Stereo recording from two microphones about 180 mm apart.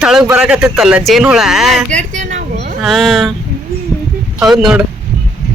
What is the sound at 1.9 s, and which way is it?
Speech, 45° right (ahead or behind).